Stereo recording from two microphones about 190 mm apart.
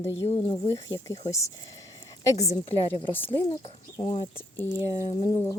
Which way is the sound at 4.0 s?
25° left (ahead or behind).